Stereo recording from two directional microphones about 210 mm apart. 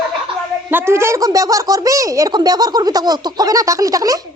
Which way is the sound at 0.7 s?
10° right (ahead or behind).